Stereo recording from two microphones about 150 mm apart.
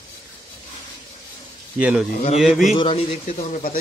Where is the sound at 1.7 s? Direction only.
10° right (ahead or behind).